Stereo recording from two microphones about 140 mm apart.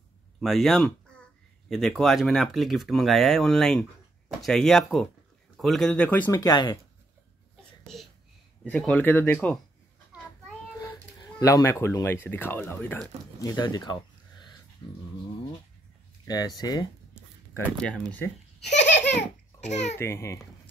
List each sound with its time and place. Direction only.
0.4 s speech: centre (ahead or behind)
6.3 s speech: 30° left (ahead or behind)
7.8 s a sound: centre (ahead or behind)
8.6 s speech: 10° left (ahead or behind)
10.8 s speech: 25° left (ahead or behind)
13.4 s speech: 30° left (ahead or behind)
16.3 s speech: 25° left (ahead or behind)
17.6 s speech: 5° left (ahead or behind)
19.6 s a child's voice: 55° left (ahead or behind)
20.0 s speech: 20° left (ahead or behind)